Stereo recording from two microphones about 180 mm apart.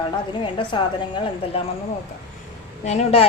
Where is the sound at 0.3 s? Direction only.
25° left (ahead or behind).